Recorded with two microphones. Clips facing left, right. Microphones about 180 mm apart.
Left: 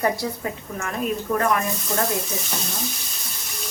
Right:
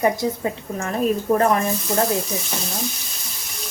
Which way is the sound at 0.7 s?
30° right (ahead or behind).